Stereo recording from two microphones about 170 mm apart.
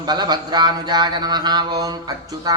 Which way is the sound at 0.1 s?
25° right (ahead or behind).